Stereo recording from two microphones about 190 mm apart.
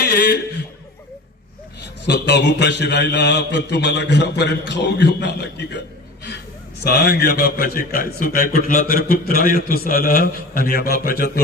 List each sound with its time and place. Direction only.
0.0 s speech: 60° left (ahead or behind)
2.0 s a man's voice: 65° left (ahead or behind)
6.8 s a man's voice: 55° left (ahead or behind)